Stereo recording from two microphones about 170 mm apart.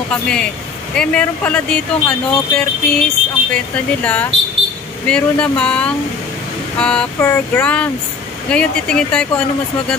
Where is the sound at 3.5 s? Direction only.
10° left (ahead or behind).